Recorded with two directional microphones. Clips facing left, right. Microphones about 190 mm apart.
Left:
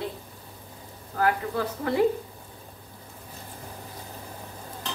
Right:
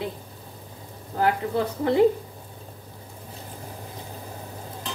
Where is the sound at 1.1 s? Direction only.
25° right (ahead or behind).